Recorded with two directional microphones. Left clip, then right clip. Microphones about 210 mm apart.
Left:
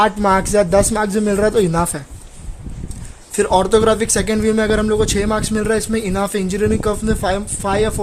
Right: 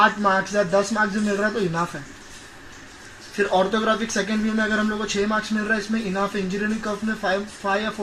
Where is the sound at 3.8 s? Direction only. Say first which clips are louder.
Left 7 dB; 85° left.